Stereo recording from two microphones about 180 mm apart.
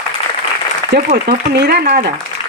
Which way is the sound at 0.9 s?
60° right (ahead or behind).